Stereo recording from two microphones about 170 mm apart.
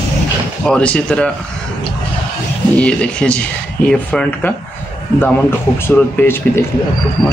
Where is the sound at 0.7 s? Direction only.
5° left (ahead or behind).